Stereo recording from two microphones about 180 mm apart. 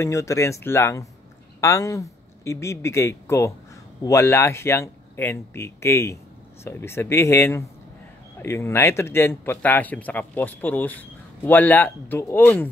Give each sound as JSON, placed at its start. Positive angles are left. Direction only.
{"t": 0.0, "sound": "speech", "side_deg": 15}